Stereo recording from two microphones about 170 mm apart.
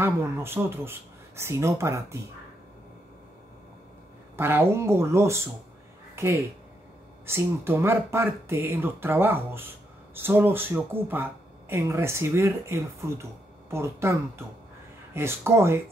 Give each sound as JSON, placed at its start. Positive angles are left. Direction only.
{"t": 0.0, "sound": "speech", "side_deg": -15}
{"t": 4.4, "sound": "speech", "side_deg": -15}
{"t": 15.1, "sound": "speech", "side_deg": -15}